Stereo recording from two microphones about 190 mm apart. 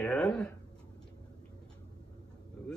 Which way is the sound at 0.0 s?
5° left (ahead or behind).